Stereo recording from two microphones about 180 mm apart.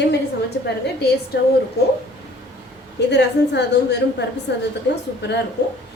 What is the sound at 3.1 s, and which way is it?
A woman's voice, 70° left (ahead or behind).